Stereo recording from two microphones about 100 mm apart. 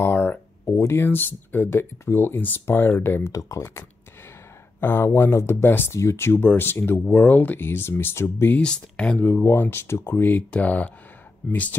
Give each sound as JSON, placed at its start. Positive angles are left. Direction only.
{"t": 0.0, "sound": "speech", "side_deg": 20}
{"t": 3.3, "sound": "speech", "side_deg": 30}
{"t": 8.5, "sound": "speech", "side_deg": 10}